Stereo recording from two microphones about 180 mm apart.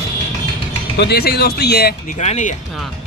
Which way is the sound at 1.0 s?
60° left (ahead or behind).